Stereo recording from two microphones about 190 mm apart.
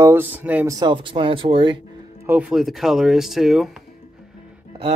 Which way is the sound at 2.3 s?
5° right (ahead or behind).